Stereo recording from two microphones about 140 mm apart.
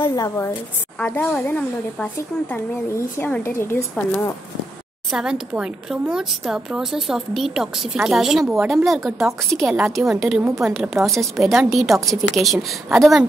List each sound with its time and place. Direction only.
0.0 s a woman's voice: 25° left (ahead or behind)
0.9 s a woman's voice: 10° left (ahead or behind)
5.1 s speech: 5° right (ahead or behind)